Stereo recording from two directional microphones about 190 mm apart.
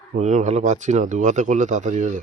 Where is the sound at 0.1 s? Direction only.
40° right (ahead or behind).